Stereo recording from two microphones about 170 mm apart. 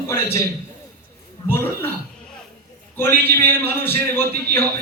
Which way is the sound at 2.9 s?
15° left (ahead or behind).